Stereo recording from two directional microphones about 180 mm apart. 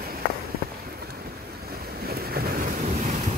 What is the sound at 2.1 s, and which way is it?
Waves, 55° right (ahead or behind).